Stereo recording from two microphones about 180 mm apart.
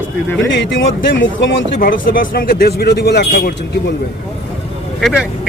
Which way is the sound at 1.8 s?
50° left (ahead or behind).